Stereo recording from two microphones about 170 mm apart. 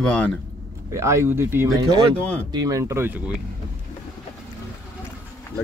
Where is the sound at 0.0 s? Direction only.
5° left (ahead or behind).